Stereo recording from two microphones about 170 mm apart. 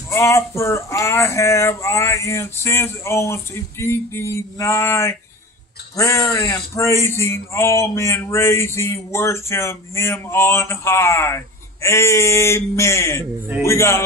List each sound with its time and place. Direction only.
0.1 s speech: 15° left (ahead or behind)